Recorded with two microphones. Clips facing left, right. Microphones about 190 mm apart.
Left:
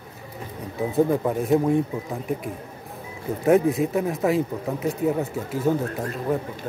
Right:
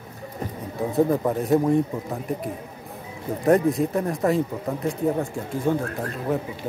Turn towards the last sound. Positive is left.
turn(degrees=5)  # may be behind; listen again after turning